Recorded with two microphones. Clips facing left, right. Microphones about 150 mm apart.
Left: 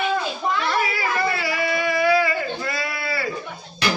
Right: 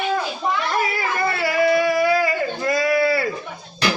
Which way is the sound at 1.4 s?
50° right (ahead or behind).